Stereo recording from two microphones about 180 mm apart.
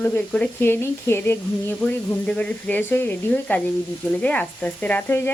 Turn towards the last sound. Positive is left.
turn(degrees=10)  # may be behind; listen again after turning